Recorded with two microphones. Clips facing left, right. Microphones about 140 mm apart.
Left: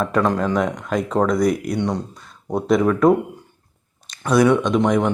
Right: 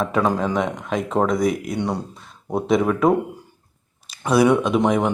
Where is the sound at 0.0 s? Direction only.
5° right (ahead or behind).